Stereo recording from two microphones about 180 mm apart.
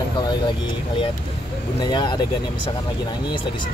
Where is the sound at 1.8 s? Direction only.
25° left (ahead or behind).